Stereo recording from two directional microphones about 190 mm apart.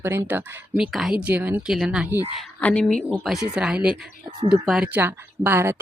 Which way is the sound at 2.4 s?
5° left (ahead or behind).